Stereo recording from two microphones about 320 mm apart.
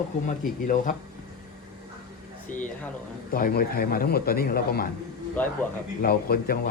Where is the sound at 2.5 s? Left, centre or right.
Left.